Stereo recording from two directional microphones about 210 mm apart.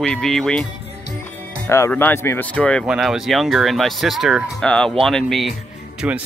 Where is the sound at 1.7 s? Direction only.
10° left (ahead or behind).